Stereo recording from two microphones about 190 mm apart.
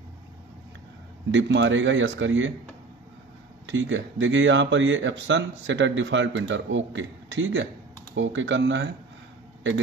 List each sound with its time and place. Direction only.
1.3 s speech: 75° right (ahead or behind)
3.6 s speech: 75° right (ahead or behind)